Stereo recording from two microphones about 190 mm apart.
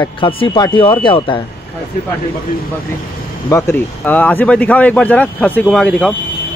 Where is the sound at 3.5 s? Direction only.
10° left (ahead or behind).